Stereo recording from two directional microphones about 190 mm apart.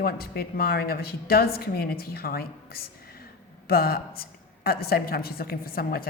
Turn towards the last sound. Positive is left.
turn(degrees=50)  # may be behind; listen again after turning